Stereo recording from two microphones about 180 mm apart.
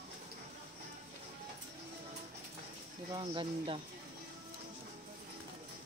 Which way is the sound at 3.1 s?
25° right (ahead or behind).